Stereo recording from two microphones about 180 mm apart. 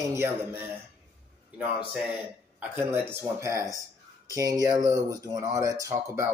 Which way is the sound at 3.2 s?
15° right (ahead or behind).